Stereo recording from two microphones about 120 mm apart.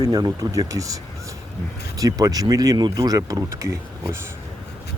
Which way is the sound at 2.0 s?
30° right (ahead or behind).